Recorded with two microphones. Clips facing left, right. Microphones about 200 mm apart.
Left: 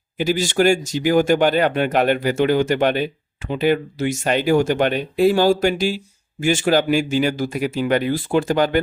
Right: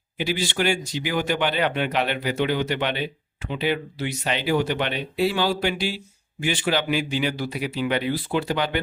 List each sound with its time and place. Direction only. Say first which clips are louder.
0.2 s speech: left 7 dB; 45° left (ahead or behind)